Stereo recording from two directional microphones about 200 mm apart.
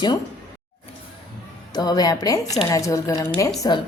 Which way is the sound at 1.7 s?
20° left (ahead or behind).